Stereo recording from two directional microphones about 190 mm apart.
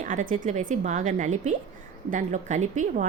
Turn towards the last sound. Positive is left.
turn(degrees=-40)  # may be behind; listen again after turning